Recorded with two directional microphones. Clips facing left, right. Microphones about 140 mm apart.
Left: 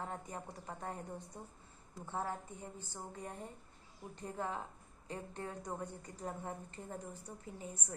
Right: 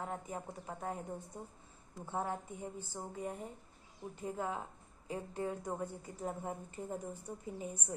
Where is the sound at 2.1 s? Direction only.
15° right (ahead or behind).